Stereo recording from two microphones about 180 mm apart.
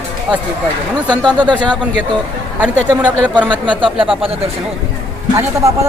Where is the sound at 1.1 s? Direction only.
25° right (ahead or behind).